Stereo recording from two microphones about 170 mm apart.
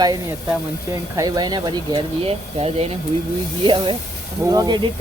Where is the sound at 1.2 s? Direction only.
25° right (ahead or behind).